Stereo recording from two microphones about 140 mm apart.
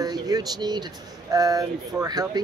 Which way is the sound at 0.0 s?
25° right (ahead or behind).